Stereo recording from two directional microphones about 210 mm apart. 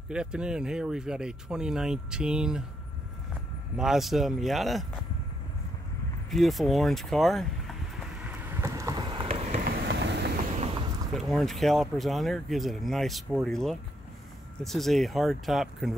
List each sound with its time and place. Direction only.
0.1 s speech: 5° right (ahead or behind)
3.7 s speech: centre (ahead or behind)
6.3 s speech: centre (ahead or behind)
8.3 s a sound: 10° right (ahead or behind); by 9.6 s 30° right (ahead or behind)
9.7 s vehicle: 55° right (ahead or behind)
11.1 s speech: centre (ahead or behind)